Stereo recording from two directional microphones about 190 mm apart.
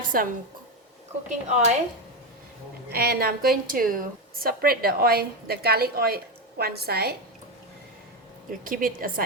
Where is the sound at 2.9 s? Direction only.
55° right (ahead or behind).